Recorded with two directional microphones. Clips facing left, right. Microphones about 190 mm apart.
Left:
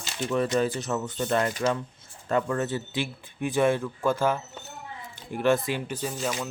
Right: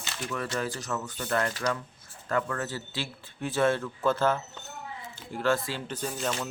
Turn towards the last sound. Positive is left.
turn(degrees=10)  # may be behind; listen again after turning